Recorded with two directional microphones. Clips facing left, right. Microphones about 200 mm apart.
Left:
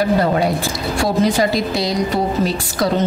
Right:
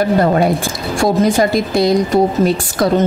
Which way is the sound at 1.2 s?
50° right (ahead or behind).